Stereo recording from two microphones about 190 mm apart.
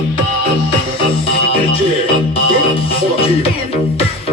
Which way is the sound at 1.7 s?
30° left (ahead or behind).